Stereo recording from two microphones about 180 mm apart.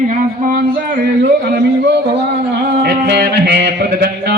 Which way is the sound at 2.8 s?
65° right (ahead or behind).